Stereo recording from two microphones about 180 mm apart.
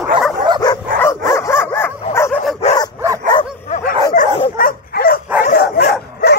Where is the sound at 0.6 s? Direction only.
20° left (ahead or behind).